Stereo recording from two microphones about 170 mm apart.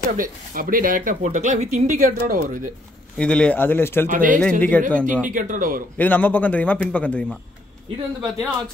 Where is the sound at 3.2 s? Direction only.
5° left (ahead or behind).